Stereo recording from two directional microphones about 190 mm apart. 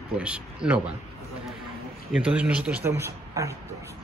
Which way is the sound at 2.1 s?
5° right (ahead or behind).